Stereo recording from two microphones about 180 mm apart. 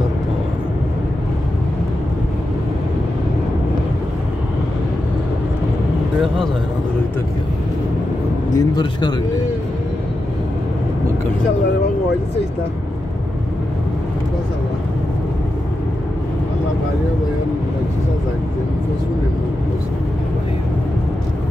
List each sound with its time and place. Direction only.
8.5 s speech: 20° left (ahead or behind)